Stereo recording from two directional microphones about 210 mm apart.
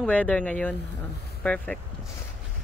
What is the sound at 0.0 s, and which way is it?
Speech, 5° left (ahead or behind).